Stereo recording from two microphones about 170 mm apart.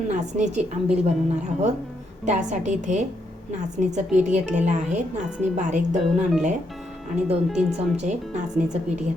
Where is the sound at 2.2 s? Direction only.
45° right (ahead or behind).